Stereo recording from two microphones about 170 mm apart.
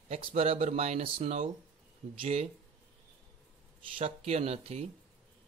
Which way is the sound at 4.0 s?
35° right (ahead or behind).